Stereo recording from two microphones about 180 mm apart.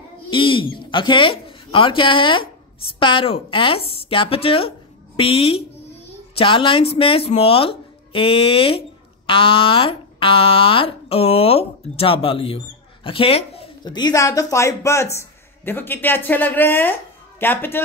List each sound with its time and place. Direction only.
0.3 s a man's voice: 30° left (ahead or behind); by 17.8 s 10° left (ahead or behind)